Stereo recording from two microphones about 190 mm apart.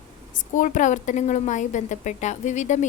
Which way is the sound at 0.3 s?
45° left (ahead or behind).